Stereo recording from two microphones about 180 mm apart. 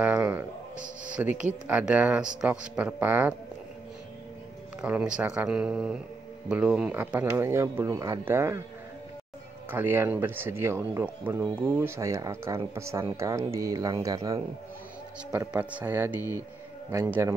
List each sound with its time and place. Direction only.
0.0 s a sound: 10° right (ahead or behind)
0.7 s music: 45° right (ahead or behind)
1.1 s speech: 10° right (ahead or behind)
4.8 s speech: 5° right (ahead or behind)
9.7 s speech: 10° right (ahead or behind)
15.3 s speech: 5° right (ahead or behind)